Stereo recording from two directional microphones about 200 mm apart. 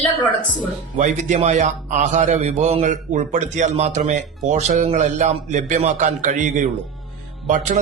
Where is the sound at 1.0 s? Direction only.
35° right (ahead or behind).